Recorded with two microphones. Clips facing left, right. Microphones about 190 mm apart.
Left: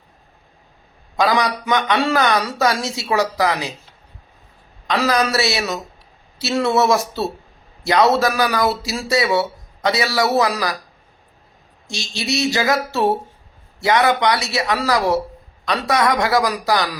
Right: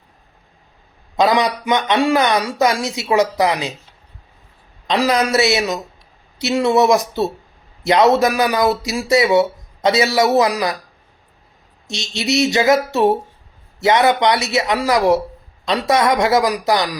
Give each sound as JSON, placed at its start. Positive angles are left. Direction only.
{"t": 1.1, "sound": "speech", "side_deg": -20}
{"t": 4.9, "sound": "speech", "side_deg": -20}
{"t": 11.9, "sound": "speech", "side_deg": -20}